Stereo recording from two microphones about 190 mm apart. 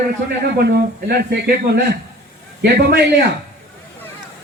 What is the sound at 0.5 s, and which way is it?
Speech, 55° right (ahead or behind).